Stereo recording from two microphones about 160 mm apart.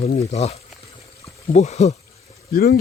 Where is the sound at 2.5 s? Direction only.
75° left (ahead or behind).